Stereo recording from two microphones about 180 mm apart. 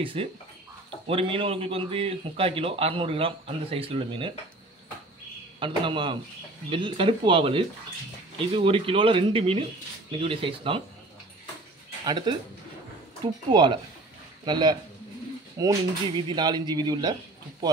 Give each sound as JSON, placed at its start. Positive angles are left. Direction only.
{"t": 0.0, "sound": "a man's voice", "side_deg": -30}
{"t": 5.6, "sound": "a man's voice", "side_deg": -25}
{"t": 12.0, "sound": "a man's voice", "side_deg": -25}